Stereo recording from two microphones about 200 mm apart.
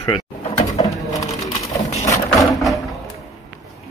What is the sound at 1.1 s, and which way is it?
Sewing machine, 15° left (ahead or behind).